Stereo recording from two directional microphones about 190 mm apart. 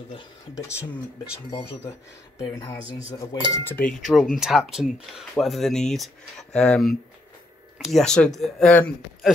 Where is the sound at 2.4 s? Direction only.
20° left (ahead or behind).